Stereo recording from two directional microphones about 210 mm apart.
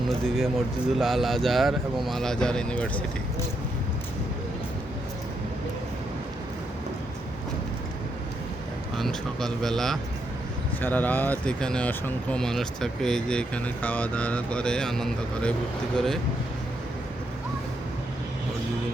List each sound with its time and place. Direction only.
0.1 s speech: centre (ahead or behind)
9.0 s speech: centre (ahead or behind)